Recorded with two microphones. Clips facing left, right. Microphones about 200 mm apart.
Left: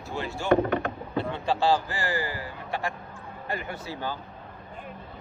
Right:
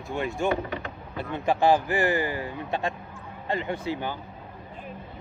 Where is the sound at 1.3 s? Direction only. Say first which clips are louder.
Right 4 dB; 20° right (ahead or behind).